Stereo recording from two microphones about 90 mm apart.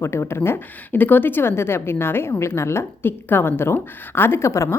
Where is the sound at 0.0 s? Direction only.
30° left (ahead or behind).